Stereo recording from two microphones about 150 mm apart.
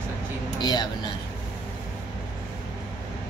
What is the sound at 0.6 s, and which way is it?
Speech, 30° left (ahead or behind).